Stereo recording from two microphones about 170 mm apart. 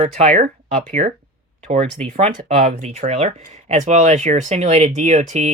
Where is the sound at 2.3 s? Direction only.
50° right (ahead or behind).